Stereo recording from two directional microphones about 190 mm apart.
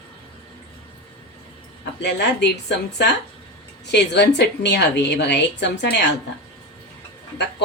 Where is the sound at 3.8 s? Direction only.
65° left (ahead or behind).